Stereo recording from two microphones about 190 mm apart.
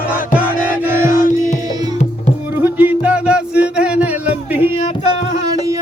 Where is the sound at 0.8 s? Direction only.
10° right (ahead or behind).